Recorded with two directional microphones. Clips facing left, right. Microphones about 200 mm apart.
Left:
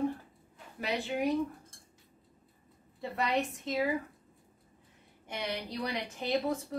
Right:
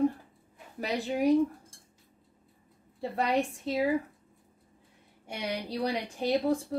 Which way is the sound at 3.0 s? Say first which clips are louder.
Right 3 dB; 30° right (ahead or behind).